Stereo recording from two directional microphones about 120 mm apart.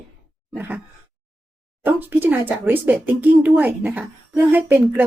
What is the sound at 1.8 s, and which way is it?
Speech, 15° right (ahead or behind).